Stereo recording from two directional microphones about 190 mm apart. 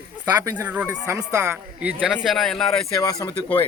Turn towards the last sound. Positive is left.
turn(degrees=10)  # may be behind; listen again after turning